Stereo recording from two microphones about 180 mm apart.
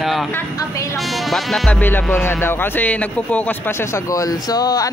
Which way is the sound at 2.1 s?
10° left (ahead or behind).